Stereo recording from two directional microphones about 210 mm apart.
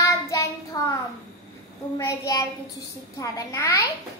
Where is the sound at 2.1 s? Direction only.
15° left (ahead or behind).